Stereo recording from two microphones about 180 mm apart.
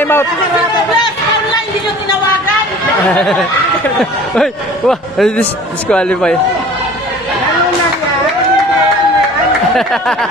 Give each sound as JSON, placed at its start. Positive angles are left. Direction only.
{"t": 0.0, "sound": "speech", "side_deg": 10}
{"t": 3.1, "sound": "a man's voice", "side_deg": 5}